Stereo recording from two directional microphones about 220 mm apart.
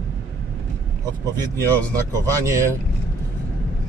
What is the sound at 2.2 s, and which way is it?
Speech, 15° right (ahead or behind).